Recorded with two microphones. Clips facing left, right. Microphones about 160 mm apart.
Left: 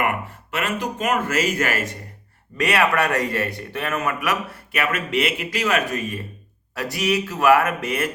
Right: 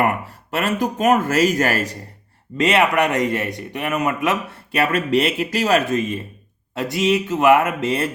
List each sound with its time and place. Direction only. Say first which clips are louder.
0.5 s speech: right 4 dB; 40° right (ahead or behind)
2.6 s speech: right 3 dB; 25° right (ahead or behind)
5.9 s speech: right 6 dB; 20° right (ahead or behind)